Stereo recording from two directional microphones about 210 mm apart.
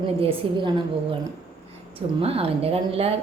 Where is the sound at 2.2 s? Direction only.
30° right (ahead or behind).